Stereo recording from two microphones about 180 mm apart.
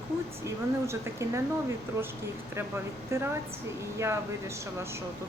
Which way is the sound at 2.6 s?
15° right (ahead or behind).